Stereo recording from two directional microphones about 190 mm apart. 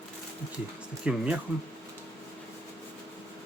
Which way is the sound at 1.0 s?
5° right (ahead or behind).